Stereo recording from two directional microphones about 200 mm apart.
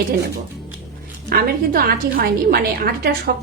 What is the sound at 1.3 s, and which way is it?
A woman's voice, 50° right (ahead or behind).